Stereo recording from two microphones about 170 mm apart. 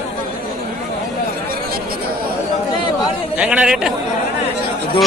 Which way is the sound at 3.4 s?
5° right (ahead or behind).